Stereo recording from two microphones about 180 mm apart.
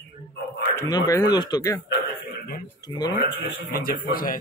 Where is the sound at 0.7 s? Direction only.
20° left (ahead or behind).